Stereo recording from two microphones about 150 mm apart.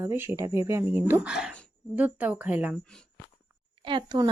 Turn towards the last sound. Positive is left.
turn(degrees=-30)  # may be behind; listen again after turning